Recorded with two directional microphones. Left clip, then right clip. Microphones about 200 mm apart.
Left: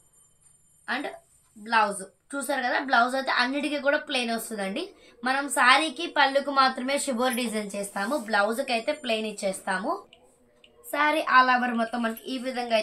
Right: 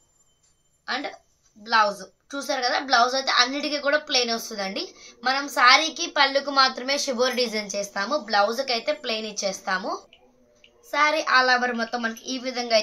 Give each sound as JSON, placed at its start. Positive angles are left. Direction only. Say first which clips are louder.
{"t": 1.6, "sound": "a woman's voice", "louder": "right 3 dB", "side_deg": -30}
{"t": 10.9, "sound": "a woman's voice", "louder": "right 2 dB", "side_deg": -35}